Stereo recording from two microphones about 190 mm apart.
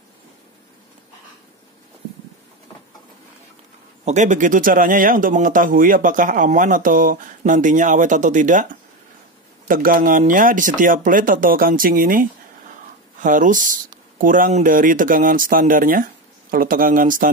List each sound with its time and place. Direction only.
4.0 s speech: 40° right (ahead or behind)
9.7 s speech: 45° right (ahead or behind)